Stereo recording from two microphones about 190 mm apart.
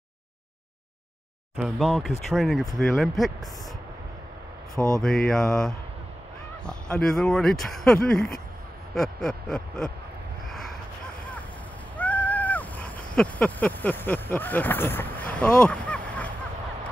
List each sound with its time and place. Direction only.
1.6 s speech: centre (ahead or behind)
4.7 s speech: 15° right (ahead or behind)
5.0 s speech: centre (ahead or behind)
12.0 s cat: 10° left (ahead or behind)